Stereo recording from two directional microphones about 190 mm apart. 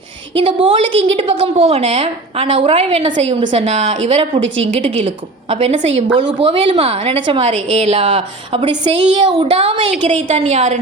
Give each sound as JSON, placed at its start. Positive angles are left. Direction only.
{"t": 0.3, "sound": "a woman's voice", "side_deg": -30}
{"t": 4.4, "sound": "a woman's voice", "side_deg": -80}
{"t": 5.0, "sound": "a woman's voice", "side_deg": -30}